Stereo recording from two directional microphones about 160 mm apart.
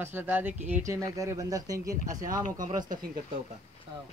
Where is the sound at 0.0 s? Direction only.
15° right (ahead or behind).